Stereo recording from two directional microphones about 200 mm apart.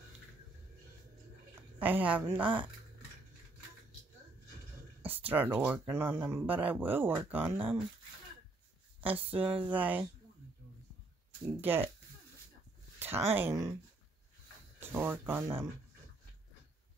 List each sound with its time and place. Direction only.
1.5 s speech: 10° right (ahead or behind)
5.0 s speech: 10° right (ahead or behind)
9.0 s speech: 10° right (ahead or behind)
11.4 s speech: 10° right (ahead or behind)
13.3 s speech: 10° right (ahead or behind)
14.8 s speech: 10° right (ahead or behind)